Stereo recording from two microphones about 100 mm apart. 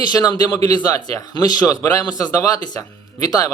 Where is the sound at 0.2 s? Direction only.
40° left (ahead or behind).